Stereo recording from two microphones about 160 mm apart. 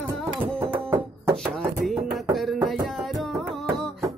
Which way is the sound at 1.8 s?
Centre (ahead or behind).